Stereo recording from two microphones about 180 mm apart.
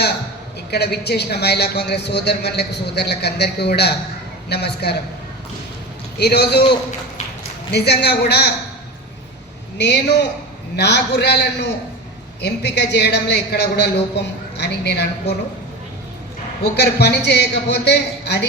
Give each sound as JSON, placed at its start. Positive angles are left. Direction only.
{"t": 0.7, "sound": "a man's voice", "side_deg": 65}
{"t": 6.1, "sound": "a man's voice", "side_deg": 65}
{"t": 9.7, "sound": "a man's voice", "side_deg": 70}
{"t": 16.7, "sound": "a man's voice", "side_deg": 65}